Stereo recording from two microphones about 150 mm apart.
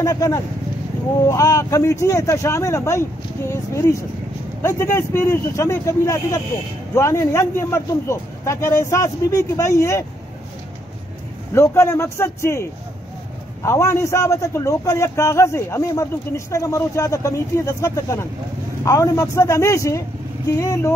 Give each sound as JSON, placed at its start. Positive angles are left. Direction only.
{"t": 0.0, "sound": "a man's voice", "side_deg": 20}
{"t": 11.5, "sound": "a man's voice", "side_deg": 20}